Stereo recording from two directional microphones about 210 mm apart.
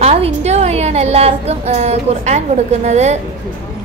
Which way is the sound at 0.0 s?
30° right (ahead or behind).